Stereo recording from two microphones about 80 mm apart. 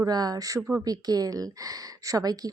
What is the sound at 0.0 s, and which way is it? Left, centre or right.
A woman's voice, right.